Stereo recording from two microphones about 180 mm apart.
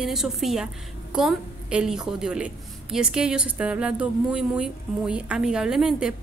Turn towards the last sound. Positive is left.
turn(degrees=-5)  # may be behind; listen again after turning